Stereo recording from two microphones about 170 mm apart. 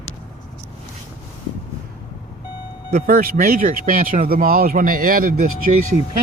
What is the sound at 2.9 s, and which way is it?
Speech, 60° right (ahead or behind).